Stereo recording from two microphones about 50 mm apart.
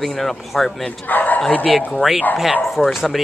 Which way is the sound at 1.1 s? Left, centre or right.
Left.